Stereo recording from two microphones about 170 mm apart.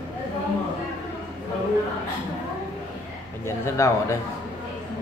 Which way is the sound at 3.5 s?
15° left (ahead or behind).